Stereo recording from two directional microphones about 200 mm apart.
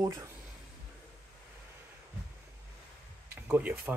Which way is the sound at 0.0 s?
20° right (ahead or behind).